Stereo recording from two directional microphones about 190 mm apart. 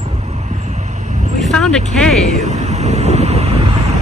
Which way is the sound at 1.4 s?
5° left (ahead or behind).